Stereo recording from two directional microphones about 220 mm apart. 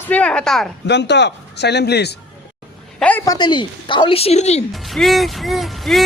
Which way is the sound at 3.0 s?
10° left (ahead or behind).